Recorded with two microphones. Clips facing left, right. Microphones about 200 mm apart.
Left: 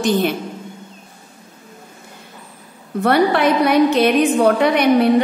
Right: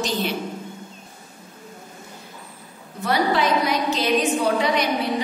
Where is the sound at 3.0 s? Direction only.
60° left (ahead or behind).